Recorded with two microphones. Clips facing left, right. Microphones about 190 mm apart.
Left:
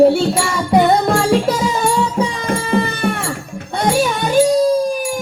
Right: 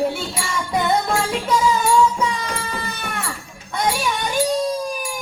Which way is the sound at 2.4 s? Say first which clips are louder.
Left 10 dB; 55° left (ahead or behind).